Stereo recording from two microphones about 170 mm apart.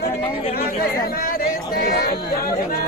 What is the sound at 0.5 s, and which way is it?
Speech, 60° left (ahead or behind).